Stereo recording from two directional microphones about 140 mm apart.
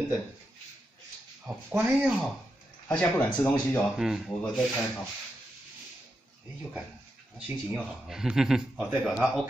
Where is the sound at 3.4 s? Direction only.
15° left (ahead or behind).